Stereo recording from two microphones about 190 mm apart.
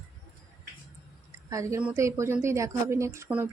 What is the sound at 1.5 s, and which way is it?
Speech, 15° right (ahead or behind).